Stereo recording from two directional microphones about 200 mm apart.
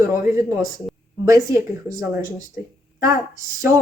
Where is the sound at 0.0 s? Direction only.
15° right (ahead or behind).